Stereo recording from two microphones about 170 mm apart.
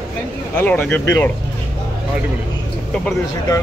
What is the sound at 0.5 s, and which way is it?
Speech, 10° left (ahead or behind).